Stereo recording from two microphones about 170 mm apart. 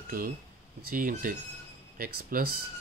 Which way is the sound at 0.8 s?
55° right (ahead or behind).